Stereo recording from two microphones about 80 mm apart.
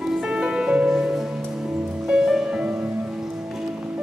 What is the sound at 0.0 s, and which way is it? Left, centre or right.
Music, centre.